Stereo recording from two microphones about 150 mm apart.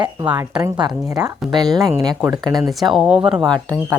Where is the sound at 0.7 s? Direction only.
25° right (ahead or behind).